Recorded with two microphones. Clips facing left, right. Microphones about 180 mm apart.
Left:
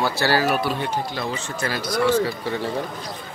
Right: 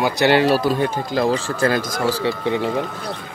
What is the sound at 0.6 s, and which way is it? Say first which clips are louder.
Speech: right 5 dB; 45° right (ahead or behind).